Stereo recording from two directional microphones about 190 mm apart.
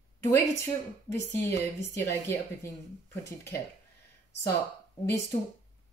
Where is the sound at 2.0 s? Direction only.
15° left (ahead or behind).